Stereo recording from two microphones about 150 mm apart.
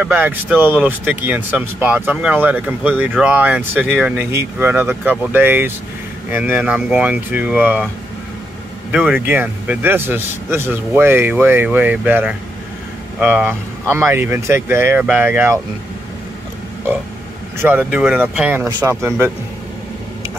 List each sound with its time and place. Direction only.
0.0 s speech: 10° right (ahead or behind)
8.9 s speech: 10° right (ahead or behind)
17.6 s speech: 10° right (ahead or behind)
18.7 s speech: 30° right (ahead or behind)
19.0 s speech: 15° right (ahead or behind)